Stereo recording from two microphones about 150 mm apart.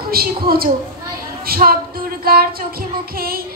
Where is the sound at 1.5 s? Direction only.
75° right (ahead or behind).